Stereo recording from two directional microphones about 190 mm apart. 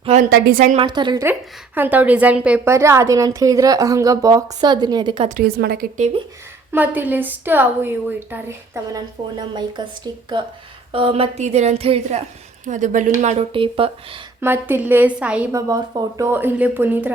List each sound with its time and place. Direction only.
0.0 s a sound: 35° right (ahead or behind)
0.3 s a woman's voice: 50° right (ahead or behind)
0.8 s a woman's voice: 25° right (ahead or behind)
1.2 s a woman's voice: 10° right (ahead or behind); by 5.3 s 25° right (ahead or behind)
5.3 s a woman's voice: 55° right (ahead or behind)
6.7 s a woman's voice: 10° right (ahead or behind); by 13.9 s 30° right (ahead or behind)
14.4 s a woman's voice: 10° right (ahead or behind)
15.7 s a woman's voice: 20° right (ahead or behind)